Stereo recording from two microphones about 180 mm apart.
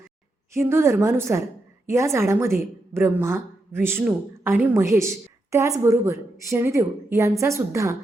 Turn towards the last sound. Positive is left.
turn(degrees=-15)  # may be behind; listen again after turning